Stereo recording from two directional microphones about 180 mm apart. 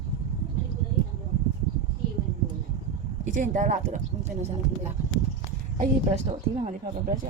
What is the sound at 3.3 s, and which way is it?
Speech, 45° right (ahead or behind).